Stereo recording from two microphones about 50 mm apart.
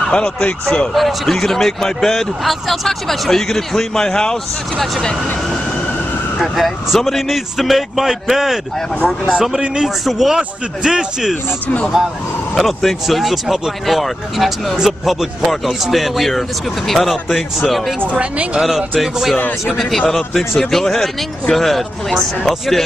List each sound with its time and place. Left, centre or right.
0.1 s speech: centre
0.9 s speech: centre
6.3 s speech: centre
9.0 s speech: centre
9.6 s speech: centre
12.5 s speech: centre
18.2 s speech: right
18.6 s speech: centre